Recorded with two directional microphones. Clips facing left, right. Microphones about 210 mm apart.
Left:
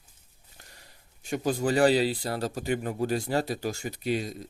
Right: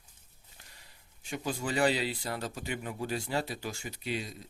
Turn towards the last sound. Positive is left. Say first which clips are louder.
# left 7 dB
turn(degrees=45)  # may be behind; listen again after turning